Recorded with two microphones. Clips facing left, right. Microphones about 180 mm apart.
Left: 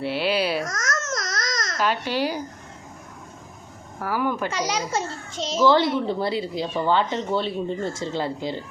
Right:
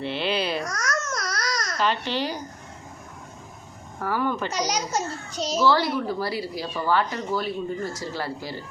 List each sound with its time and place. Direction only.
0.0 s speech: 5° left (ahead or behind)
0.6 s speech: 45° left (ahead or behind)
1.2 s baby cry: 25° left (ahead or behind)
1.8 s speech: 10° left (ahead or behind)
4.0 s speech: 10° left (ahead or behind)
4.6 s a child's voice: 30° left (ahead or behind)